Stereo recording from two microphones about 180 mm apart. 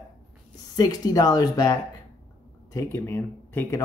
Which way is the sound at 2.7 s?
15° left (ahead or behind).